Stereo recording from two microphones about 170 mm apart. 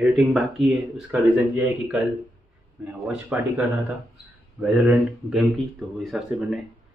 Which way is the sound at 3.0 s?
5° right (ahead or behind).